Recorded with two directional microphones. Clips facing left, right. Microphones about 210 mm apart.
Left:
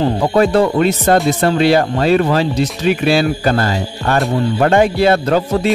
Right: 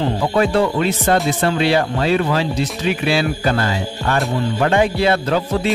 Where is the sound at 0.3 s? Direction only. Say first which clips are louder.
Left 4 dB; 40° left (ahead or behind).